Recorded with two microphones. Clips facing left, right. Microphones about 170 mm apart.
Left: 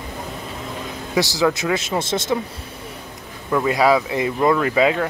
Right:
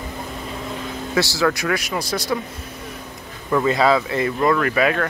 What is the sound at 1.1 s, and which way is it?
Speech, 20° left (ahead or behind).